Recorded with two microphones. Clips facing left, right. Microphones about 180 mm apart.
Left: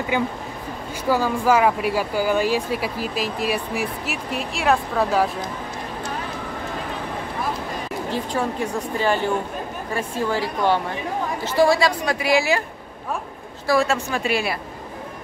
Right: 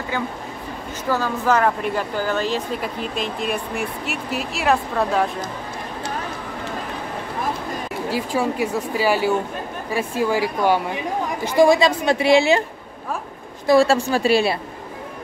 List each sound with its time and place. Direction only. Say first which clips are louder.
0.1 s speech: left 2 dB; 15° left (ahead or behind)
8.1 s speech: right 3 dB; 10° right (ahead or behind); by 12.6 s 25° right (ahead or behind)
13.7 s speech: right 5 dB; 30° right (ahead or behind)